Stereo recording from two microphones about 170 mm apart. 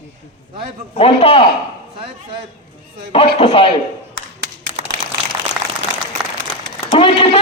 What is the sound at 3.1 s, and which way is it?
Speech, 35° left (ahead or behind).